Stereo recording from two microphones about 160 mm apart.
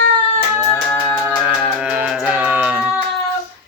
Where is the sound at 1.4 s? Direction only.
5° right (ahead or behind).